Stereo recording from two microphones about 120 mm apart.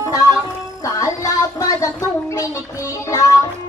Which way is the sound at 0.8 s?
30° left (ahead or behind).